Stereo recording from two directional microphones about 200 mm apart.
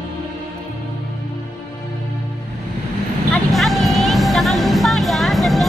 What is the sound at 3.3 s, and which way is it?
Music, centre (ahead or behind).